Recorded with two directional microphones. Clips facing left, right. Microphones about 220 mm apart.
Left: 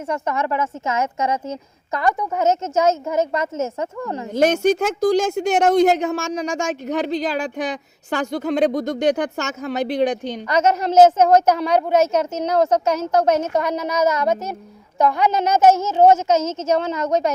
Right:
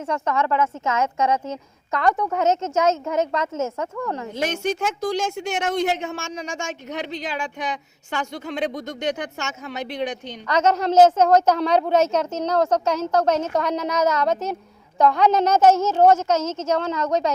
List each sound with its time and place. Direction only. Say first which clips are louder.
0.1 s a woman's voice: even; 10° left (ahead or behind)
4.3 s speech: left 11 dB; 40° left (ahead or behind)
10.4 s a woman's voice: left 1 dB; 10° left (ahead or behind)
10.9 s a woman's voice: left 2 dB; 20° left (ahead or behind)
11.5 s a woman's voice: left 1 dB; 5° left (ahead or behind)
15.5 s a woman's voice: left 1 dB; 20° left (ahead or behind)